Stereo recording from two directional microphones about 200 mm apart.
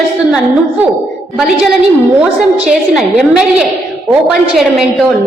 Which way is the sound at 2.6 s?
Centre (ahead or behind).